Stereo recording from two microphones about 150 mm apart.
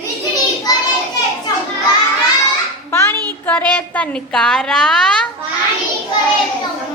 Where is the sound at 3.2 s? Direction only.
10° left (ahead or behind).